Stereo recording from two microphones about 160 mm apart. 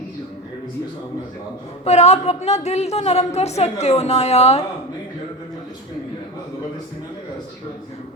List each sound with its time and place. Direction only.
1.8 s a woman's voice: 45° left (ahead or behind)